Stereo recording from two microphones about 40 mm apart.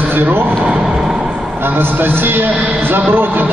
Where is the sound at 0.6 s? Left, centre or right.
Centre.